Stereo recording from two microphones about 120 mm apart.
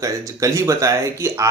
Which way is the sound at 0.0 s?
25° right (ahead or behind).